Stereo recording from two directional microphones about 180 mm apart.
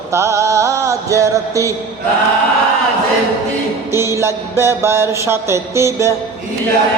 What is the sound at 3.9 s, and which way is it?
Speech, 15° right (ahead or behind).